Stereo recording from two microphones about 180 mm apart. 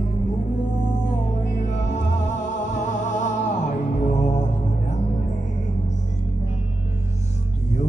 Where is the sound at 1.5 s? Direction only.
40° left (ahead or behind).